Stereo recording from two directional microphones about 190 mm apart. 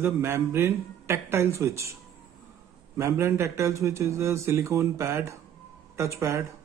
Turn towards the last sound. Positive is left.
turn(degrees=-15)  # may be behind; listen again after turning